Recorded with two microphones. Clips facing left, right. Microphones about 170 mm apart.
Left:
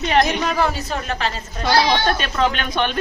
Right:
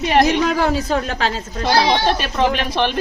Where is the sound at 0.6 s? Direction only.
90° right.